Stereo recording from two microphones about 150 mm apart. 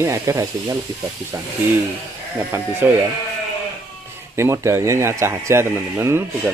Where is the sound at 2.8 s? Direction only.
10° right (ahead or behind).